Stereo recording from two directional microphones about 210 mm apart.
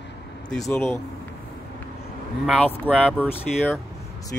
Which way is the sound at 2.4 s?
5° left (ahead or behind).